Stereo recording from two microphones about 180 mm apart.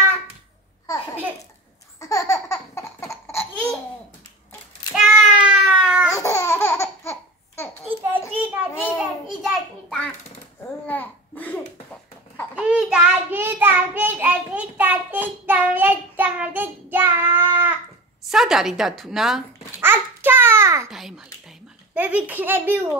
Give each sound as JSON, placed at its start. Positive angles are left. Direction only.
{"t": 2.0, "sound": "baby laughter", "side_deg": 20}
{"t": 3.1, "sound": "laughter", "side_deg": 15}
{"t": 4.9, "sound": "child singing", "side_deg": -5}
{"t": 6.1, "sound": "laughter", "side_deg": 15}
{"t": 8.4, "sound": "child singing", "side_deg": -10}
{"t": 10.9, "sound": "babbling", "side_deg": 10}
{"t": 12.5, "sound": "child singing", "side_deg": -5}
{"t": 18.2, "sound": "a woman's voice", "side_deg": 0}
{"t": 19.8, "sound": "babbling", "side_deg": -10}
{"t": 20.9, "sound": "a sound", "side_deg": 0}